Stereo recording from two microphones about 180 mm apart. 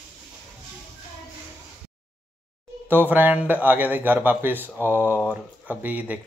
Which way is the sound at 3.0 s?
10° right (ahead or behind).